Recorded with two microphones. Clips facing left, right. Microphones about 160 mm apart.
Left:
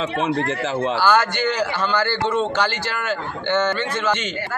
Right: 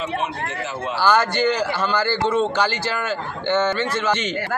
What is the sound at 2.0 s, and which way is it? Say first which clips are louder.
A man's voice: right 1 dB; 10° right (ahead or behind).